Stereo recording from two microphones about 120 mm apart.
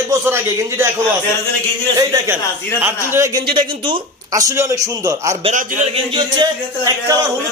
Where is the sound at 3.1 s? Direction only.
25° right (ahead or behind).